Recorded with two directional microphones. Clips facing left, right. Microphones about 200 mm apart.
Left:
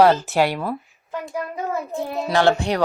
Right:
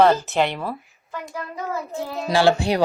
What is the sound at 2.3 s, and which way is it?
Speech, 10° right (ahead or behind).